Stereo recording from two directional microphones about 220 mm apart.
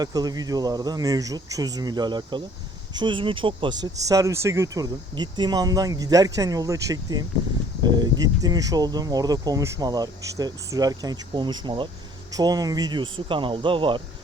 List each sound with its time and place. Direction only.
0.0 s speech: 15° right (ahead or behind)